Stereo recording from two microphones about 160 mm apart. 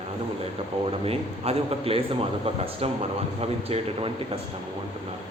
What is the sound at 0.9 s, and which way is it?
Speech, 40° right (ahead or behind).